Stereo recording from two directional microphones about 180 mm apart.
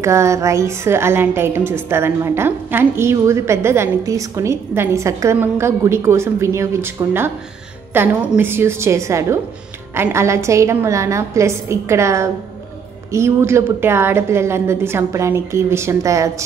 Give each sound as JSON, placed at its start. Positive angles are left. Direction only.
{"t": 0.0, "sound": "a woman's voice", "side_deg": -15}